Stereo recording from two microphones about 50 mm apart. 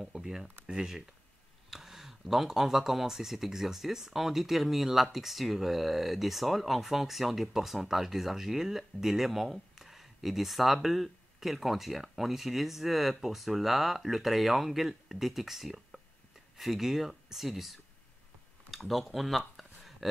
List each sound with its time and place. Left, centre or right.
0.1 s speech: centre
1.7 s speech: centre
18.7 s a sound: centre